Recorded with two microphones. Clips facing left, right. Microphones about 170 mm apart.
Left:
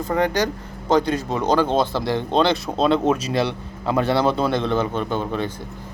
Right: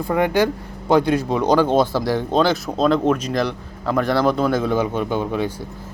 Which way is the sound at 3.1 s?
30° left (ahead or behind).